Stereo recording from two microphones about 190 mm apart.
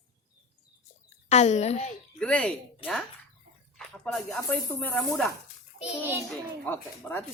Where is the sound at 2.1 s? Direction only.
5° left (ahead or behind).